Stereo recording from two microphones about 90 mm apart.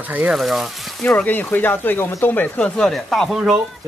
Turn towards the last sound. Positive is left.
turn(degrees=-5)  # may be behind; listen again after turning